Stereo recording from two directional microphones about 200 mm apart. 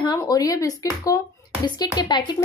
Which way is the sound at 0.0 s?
20° left (ahead or behind).